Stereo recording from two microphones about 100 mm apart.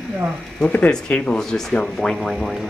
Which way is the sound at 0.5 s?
10° left (ahead or behind).